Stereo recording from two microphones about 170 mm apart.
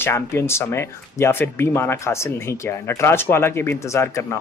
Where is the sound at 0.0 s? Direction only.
15° left (ahead or behind).